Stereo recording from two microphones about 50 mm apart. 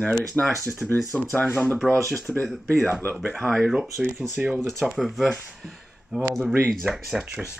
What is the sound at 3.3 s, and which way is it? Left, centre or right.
Speech, centre.